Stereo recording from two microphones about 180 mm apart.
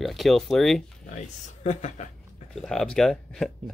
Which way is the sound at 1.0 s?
40° left (ahead or behind).